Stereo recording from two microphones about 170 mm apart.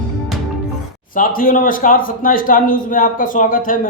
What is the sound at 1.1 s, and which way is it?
Speech, 55° left (ahead or behind).